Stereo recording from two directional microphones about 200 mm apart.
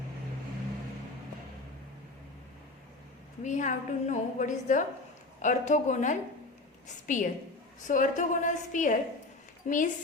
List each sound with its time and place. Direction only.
3.4 s a woman's voice: 40° left (ahead or behind)